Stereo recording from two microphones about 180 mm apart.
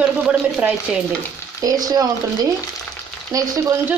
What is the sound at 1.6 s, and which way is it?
Speech, 20° right (ahead or behind).